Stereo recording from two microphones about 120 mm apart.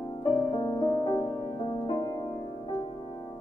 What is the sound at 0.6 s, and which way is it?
Music, 35° left (ahead or behind).